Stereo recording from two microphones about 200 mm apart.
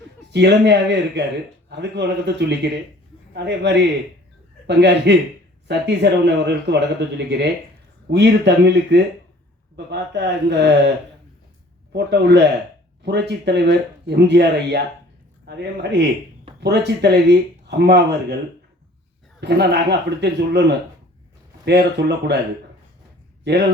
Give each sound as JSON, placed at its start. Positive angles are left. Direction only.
{"t": 0.3, "sound": "speech", "side_deg": -60}
{"t": 19.4, "sound": "speech", "side_deg": -55}
{"t": 23.4, "sound": "speech", "side_deg": -55}